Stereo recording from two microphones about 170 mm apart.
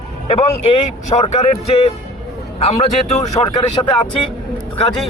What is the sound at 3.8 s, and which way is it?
Speech, 25° left (ahead or behind).